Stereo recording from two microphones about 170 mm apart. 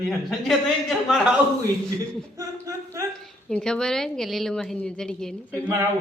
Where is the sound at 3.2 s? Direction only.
5° left (ahead or behind).